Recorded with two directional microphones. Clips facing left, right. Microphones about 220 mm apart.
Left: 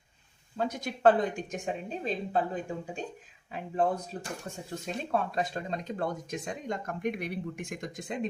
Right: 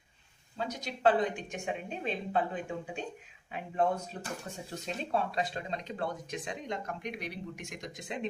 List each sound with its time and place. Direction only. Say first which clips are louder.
0.5 s speech: left 5 dB; 50° left (ahead or behind); by 4.2 s 35° left (ahead or behind)
5.1 s speech: left 2 dB; 50° left (ahead or behind)